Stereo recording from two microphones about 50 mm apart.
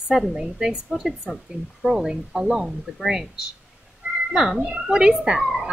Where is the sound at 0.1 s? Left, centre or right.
Centre.